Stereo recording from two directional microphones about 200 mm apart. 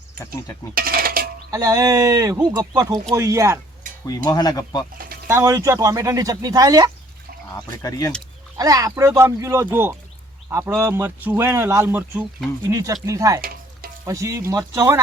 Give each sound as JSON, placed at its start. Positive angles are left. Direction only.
{"t": 0.7, "sound": "dishes", "side_deg": -45}
{"t": 1.5, "sound": "a man's voice", "side_deg": -15}
{"t": 4.0, "sound": "speech", "side_deg": 15}
{"t": 5.3, "sound": "a man's voice", "side_deg": -15}
{"t": 7.5, "sound": "speech", "side_deg": 15}
{"t": 8.5, "sound": "a man's voice", "side_deg": -15}
{"t": 13.4, "sound": "stir", "side_deg": -45}
{"t": 14.0, "sound": "a man's voice", "side_deg": -15}